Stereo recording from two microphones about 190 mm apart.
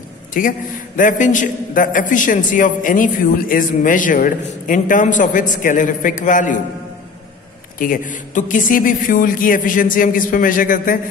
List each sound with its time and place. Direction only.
0.3 s a man's voice: 45° left (ahead or behind)
7.8 s a man's voice: 45° left (ahead or behind)